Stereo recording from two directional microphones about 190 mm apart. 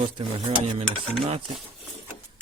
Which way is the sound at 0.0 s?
25° right (ahead or behind).